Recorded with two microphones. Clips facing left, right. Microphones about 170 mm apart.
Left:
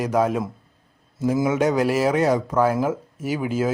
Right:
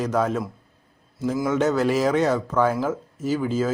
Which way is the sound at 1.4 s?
10° left (ahead or behind).